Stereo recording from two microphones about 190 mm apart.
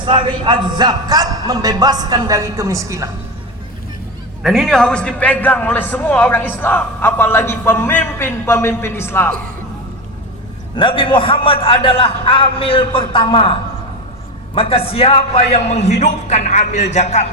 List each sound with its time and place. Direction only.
0.0 s a man's voice: 25° right (ahead or behind)
4.4 s a man's voice: centre (ahead or behind)
10.8 s a man's voice: 25° left (ahead or behind)